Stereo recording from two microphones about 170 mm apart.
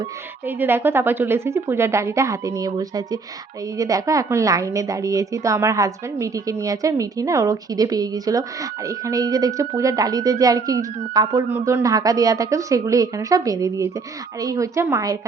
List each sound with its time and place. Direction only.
0.4 s a woman's voice: 10° right (ahead or behind)